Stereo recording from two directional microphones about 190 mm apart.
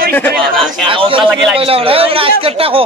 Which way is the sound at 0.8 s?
25° right (ahead or behind).